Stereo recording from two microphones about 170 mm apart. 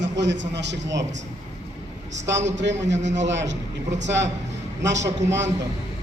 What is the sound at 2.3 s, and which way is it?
A man's voice, 90° right.